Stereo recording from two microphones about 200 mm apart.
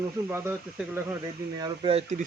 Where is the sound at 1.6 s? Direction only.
30° right (ahead or behind).